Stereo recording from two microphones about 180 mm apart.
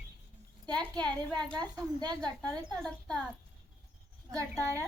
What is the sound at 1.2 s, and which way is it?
Speech, 25° right (ahead or behind).